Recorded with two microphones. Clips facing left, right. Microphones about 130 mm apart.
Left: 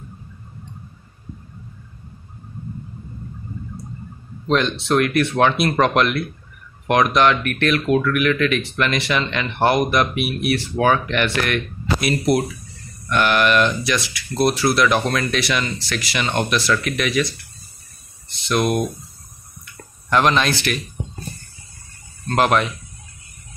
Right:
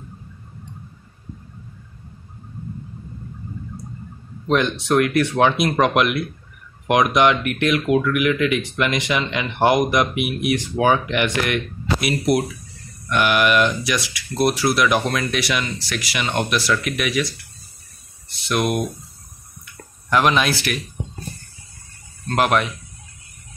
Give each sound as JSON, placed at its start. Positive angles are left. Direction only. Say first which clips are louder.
{"t": 4.5, "sound": "speech", "louder": "even", "side_deg": -15}
{"t": 18.3, "sound": "speech", "louder": "left 2 dB", "side_deg": -10}
{"t": 19.6, "sound": "a sound", "louder": "even", "side_deg": -5}
{"t": 22.3, "sound": "speech", "louder": "left 1 dB", "side_deg": -5}